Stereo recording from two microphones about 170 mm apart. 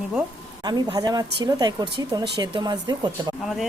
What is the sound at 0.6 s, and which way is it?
A woman's voice, 25° right (ahead or behind).